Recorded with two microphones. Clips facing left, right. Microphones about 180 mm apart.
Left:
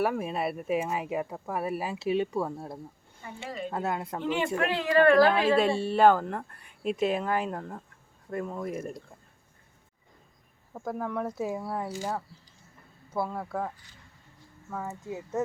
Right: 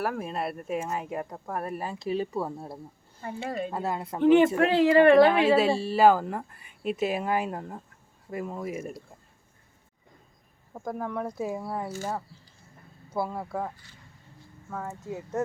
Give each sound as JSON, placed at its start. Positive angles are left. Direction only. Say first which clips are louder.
{"t": 0.0, "sound": "speech", "louder": "left 2 dB", "side_deg": 0}
{"t": 3.2, "sound": "speech", "louder": "right 5 dB", "side_deg": -55}
{"t": 3.7, "sound": "speech", "louder": "even", "side_deg": 0}
{"t": 4.2, "sound": "speech", "louder": "right 12 dB", "side_deg": -50}
{"t": 4.7, "sound": "a woman's voice", "louder": "right 2 dB", "side_deg": -25}
{"t": 5.3, "sound": "speech", "louder": "right 2 dB", "side_deg": -5}
{"t": 10.8, "sound": "speech", "louder": "even", "side_deg": 0}
{"t": 13.1, "sound": "speech", "louder": "right 1 dB", "side_deg": -5}